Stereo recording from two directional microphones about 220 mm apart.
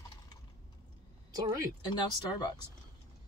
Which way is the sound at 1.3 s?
15° right (ahead or behind).